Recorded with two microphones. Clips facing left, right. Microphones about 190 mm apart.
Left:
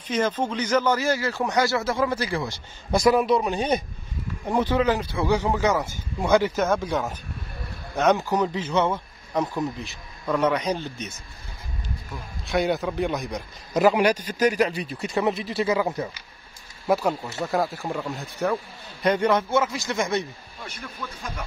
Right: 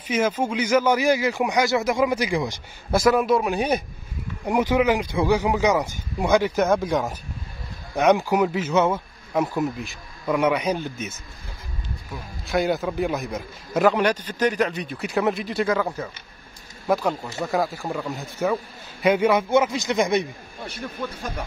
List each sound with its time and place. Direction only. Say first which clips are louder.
0.1 s speech: right 2 dB; 10° right (ahead or behind)
2.9 s a man's voice: right 1 dB; centre (ahead or behind)
12.1 s a man's voice: right 1 dB; centre (ahead or behind)
13.9 s a man's voice: left 1 dB; 10° left (ahead or behind)
16.8 s a man's voice: even; 5° left (ahead or behind); by 20.2 s 15° right (ahead or behind)
20.6 s speech: right 6 dB; 30° right (ahead or behind)